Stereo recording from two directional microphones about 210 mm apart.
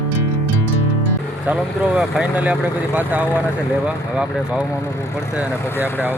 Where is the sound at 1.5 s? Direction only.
5° right (ahead or behind).